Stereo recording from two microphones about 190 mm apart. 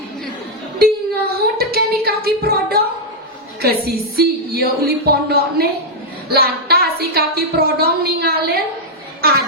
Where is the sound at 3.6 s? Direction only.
55° right (ahead or behind).